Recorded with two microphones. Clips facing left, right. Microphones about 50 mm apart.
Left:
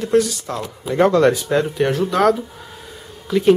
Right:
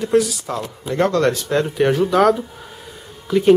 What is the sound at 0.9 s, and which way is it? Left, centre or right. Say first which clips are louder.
Speech: left 3 dB; centre.